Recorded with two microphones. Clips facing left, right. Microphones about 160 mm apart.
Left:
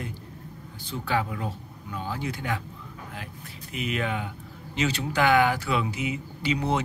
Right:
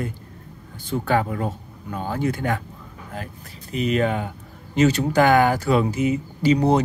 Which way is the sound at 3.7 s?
40° right (ahead or behind).